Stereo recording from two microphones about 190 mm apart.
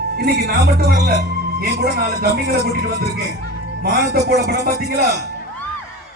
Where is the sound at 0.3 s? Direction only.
55° right (ahead or behind).